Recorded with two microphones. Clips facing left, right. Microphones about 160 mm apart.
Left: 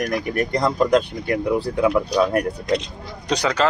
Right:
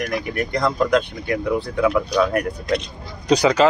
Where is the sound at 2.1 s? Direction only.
30° left (ahead or behind).